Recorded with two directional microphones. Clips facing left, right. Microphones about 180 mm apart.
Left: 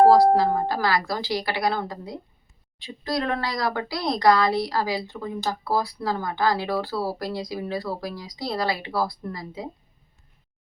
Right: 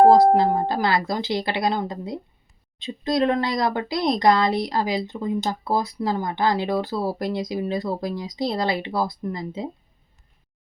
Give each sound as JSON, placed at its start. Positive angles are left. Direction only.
{"t": 0.1, "sound": "speech", "side_deg": -20}